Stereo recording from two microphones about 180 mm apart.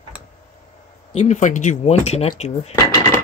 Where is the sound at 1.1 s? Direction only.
40° left (ahead or behind).